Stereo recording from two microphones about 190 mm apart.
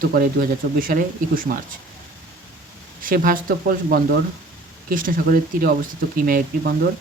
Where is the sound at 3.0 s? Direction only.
45° right (ahead or behind).